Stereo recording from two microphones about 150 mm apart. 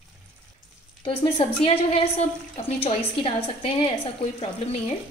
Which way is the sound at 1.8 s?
45° left (ahead or behind).